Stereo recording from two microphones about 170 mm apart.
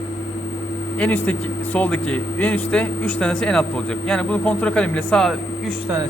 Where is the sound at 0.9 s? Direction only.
10° left (ahead or behind).